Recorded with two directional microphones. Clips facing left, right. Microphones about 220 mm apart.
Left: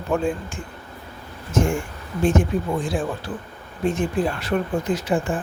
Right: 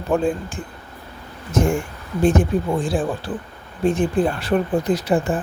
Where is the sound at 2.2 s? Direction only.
35° right (ahead or behind).